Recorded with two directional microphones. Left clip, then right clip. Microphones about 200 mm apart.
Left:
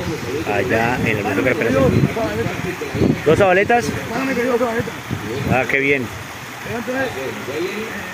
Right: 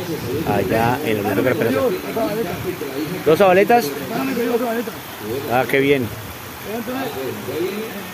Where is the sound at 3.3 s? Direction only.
Centre (ahead or behind).